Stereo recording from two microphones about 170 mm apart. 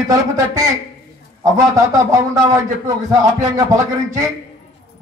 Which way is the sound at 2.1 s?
20° right (ahead or behind).